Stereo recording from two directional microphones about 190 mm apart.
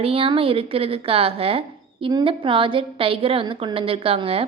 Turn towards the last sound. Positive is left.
turn(degrees=-30)  # may be behind; listen again after turning